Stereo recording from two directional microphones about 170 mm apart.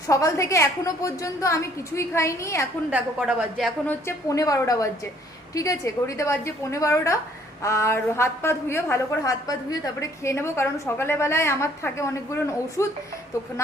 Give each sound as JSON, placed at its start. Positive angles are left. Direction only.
{"t": 0.1, "sound": "a woman's voice", "side_deg": 20}
{"t": 2.9, "sound": "a woman's voice", "side_deg": -10}
{"t": 3.8, "sound": "a woman's voice", "side_deg": 15}